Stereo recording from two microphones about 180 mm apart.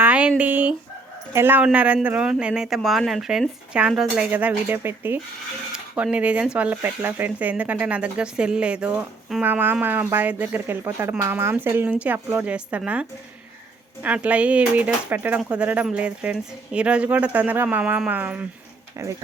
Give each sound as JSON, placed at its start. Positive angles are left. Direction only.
{"t": 0.0, "sound": "speech", "side_deg": -5}